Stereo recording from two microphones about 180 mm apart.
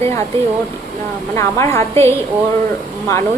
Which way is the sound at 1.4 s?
15° left (ahead or behind).